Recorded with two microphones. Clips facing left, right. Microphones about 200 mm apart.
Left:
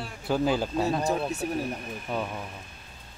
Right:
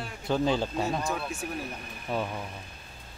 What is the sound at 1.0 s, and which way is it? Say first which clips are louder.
Speech: left 5 dB; 40° left (ahead or behind).